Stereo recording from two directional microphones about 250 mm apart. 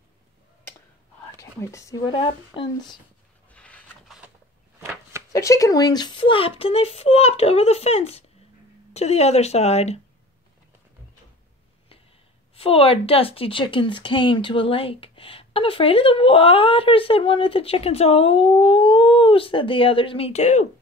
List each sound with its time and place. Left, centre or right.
1.4 s speech: centre
3.5 s a sound: centre
5.3 s speech: centre
12.5 s speech: left